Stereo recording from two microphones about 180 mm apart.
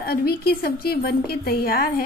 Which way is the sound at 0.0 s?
60° left (ahead or behind).